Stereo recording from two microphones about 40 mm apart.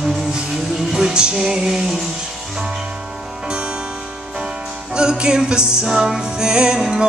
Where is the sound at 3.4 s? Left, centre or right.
Right.